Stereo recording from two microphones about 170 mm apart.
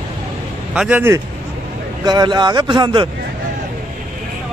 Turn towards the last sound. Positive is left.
turn(degrees=-30)  # may be behind; listen again after turning